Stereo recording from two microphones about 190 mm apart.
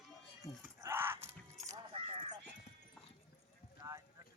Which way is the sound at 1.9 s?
30° right (ahead or behind).